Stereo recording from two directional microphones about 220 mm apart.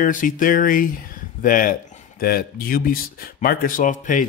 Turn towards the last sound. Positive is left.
turn(degrees=35)  # may be behind; listen again after turning